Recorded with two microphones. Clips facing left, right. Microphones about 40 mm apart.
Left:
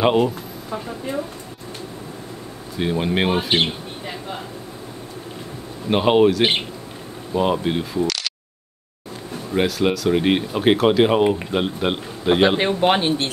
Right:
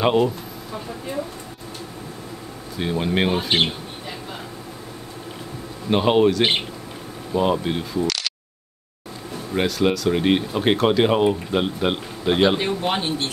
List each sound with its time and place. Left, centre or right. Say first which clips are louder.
0.0 s speech: left 1 dB; centre
2.8 s speech: left 1 dB; centre
5.9 s speech: left 2 dB; centre
9.5 s speech: left 1 dB; centre
12.5 s speech: left 5 dB; left